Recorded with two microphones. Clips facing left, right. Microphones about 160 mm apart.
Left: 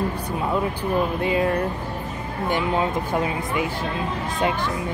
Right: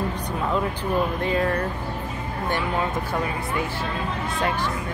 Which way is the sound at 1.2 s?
15° left (ahead or behind).